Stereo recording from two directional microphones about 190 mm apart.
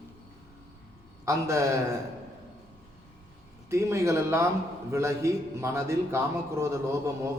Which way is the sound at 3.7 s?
15° right (ahead or behind).